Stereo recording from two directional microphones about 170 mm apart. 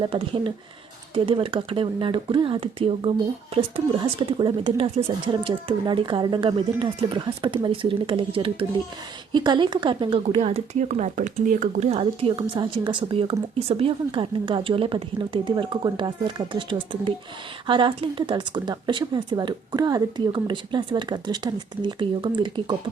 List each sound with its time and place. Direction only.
0.0 s a woman's voice: 30° right (ahead or behind)